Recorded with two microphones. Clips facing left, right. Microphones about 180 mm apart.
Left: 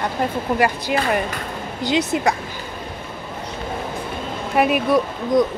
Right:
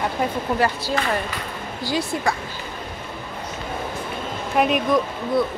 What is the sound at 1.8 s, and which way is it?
Speech, 20° left (ahead or behind).